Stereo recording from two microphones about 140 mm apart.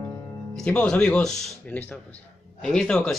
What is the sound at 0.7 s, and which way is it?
Speech, 5° left (ahead or behind).